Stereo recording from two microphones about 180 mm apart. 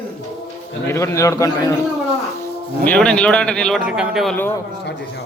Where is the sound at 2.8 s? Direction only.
5° left (ahead or behind).